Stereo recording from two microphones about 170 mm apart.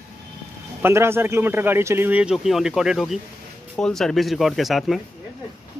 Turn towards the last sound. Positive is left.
turn(degrees=0)  # may be behind; listen again after turning